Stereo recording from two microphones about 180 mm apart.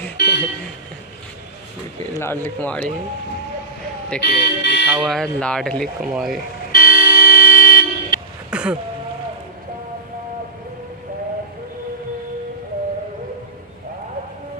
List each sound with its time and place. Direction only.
0.2 s vehicle: 65° left (ahead or behind)
2.1 s speech: 10° left (ahead or behind)
4.2 s speech: 65° left (ahead or behind)
4.9 s speech: centre (ahead or behind)
6.7 s vehicle: 55° left (ahead or behind)
8.5 s a sound: 5° right (ahead or behind)